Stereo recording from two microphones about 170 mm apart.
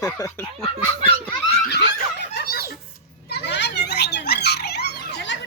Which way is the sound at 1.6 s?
80° left.